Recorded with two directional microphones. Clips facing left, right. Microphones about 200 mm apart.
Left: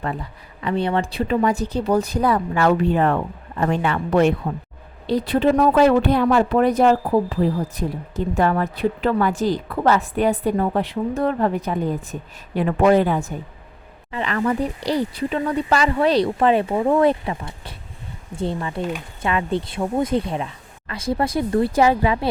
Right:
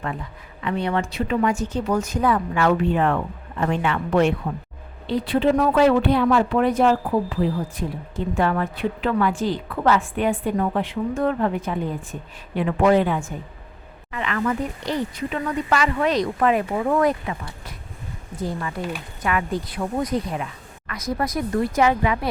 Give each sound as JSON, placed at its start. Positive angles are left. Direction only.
{"t": 0.6, "sound": "a woman's voice", "side_deg": 30}